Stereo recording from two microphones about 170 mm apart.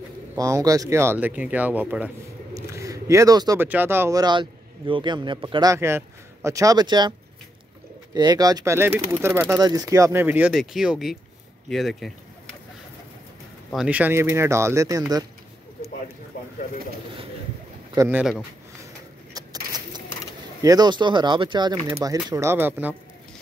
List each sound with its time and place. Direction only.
0.4 s speech: 20° right (ahead or behind)
2.5 s a sound: 20° right (ahead or behind)
3.6 s a man's voice: 10° right (ahead or behind)
13.7 s speech: 5° right (ahead or behind); by 15.2 s 20° right (ahead or behind)
17.9 s speech: 10° right (ahead or behind)
19.3 s a sound: 20° right (ahead or behind)
20.6 s a man's voice: 25° right (ahead or behind)
22.3 s speech: 15° right (ahead or behind)